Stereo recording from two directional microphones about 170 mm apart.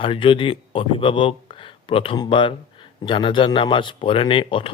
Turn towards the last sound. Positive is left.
turn(degrees=30)  # may be behind; listen again after turning